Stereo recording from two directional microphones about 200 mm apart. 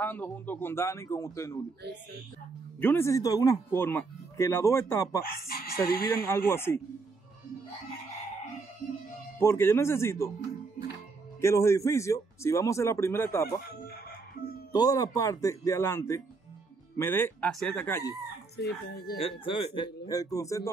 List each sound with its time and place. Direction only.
0.0 s speech: 10° left (ahead or behind)
2.8 s speech: 10° left (ahead or behind)
5.2 s speech: 50° left (ahead or behind)
6.2 s speech: 10° left (ahead or behind)
9.4 s speech: 10° left (ahead or behind)
11.4 s speech: 15° left (ahead or behind)
14.4 s music: 50° left (ahead or behind)
14.7 s speech: 20° left (ahead or behind)
18.6 s speech: 55° left (ahead or behind)
19.1 s speech: 25° left (ahead or behind)